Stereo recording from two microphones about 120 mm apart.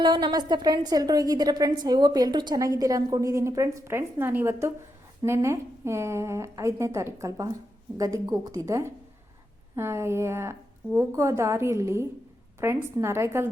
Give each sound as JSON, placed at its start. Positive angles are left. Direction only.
{"t": 0.0, "sound": "a woman's voice", "side_deg": -40}